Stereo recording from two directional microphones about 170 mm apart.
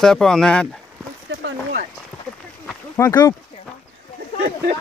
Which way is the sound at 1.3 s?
90° right.